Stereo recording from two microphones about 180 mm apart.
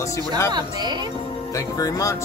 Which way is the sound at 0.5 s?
25° right (ahead or behind).